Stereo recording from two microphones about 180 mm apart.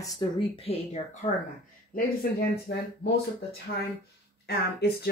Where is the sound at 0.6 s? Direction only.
35° left (ahead or behind).